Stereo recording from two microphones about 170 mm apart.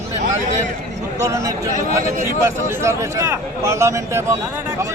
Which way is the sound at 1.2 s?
20° right (ahead or behind).